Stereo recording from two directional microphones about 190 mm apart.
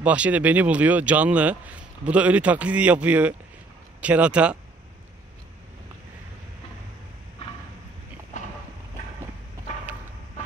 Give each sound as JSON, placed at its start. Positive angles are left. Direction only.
{"t": 0.0, "sound": "speech", "side_deg": -5}